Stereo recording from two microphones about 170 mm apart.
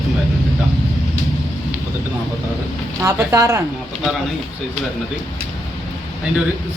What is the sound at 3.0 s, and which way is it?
Speech, 20° right (ahead or behind).